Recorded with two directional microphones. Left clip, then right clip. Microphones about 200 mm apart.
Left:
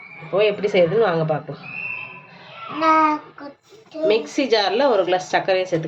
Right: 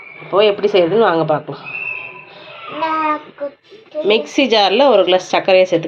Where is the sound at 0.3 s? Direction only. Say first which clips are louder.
Right 5 dB; 15° right (ahead or behind).